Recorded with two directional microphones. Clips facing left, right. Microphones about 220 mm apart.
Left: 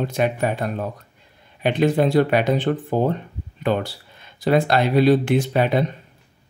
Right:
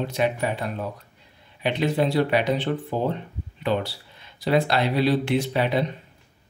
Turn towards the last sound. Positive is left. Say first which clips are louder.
# left 3 dB
turn(degrees=50)  # may be behind; listen again after turning